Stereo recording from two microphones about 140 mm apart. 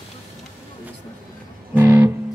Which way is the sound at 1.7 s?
15° right (ahead or behind).